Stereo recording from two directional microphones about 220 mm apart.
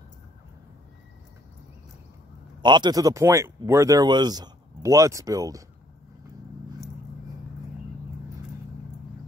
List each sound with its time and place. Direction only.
2.6 s speech: 20° right (ahead or behind)